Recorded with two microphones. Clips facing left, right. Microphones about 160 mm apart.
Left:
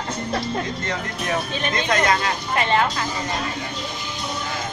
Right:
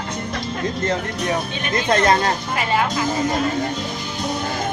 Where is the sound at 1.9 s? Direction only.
35° right (ahead or behind).